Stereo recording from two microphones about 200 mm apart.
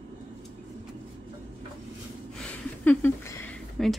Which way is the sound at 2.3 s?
5° left (ahead or behind).